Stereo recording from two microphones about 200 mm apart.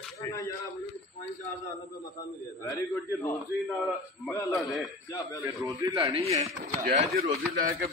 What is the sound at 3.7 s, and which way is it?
Speech, centre (ahead or behind).